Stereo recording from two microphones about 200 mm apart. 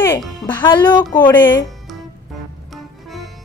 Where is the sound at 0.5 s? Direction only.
20° left (ahead or behind).